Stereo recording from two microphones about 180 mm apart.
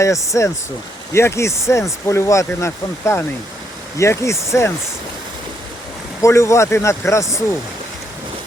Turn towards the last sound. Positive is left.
turn(degrees=15)  # may be behind; listen again after turning